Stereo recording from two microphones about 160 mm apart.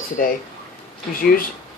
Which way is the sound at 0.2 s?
65° left (ahead or behind).